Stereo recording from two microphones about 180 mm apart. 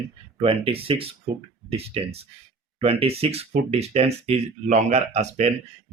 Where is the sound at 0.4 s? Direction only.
30° right (ahead or behind).